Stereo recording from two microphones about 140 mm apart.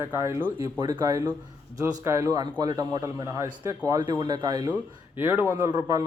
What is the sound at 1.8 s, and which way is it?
A man's voice, 20° right (ahead or behind).